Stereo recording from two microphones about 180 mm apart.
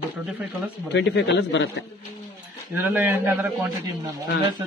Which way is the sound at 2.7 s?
10° right (ahead or behind).